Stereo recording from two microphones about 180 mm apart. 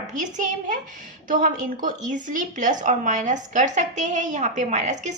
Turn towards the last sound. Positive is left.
turn(degrees=-40)  # may be behind; listen again after turning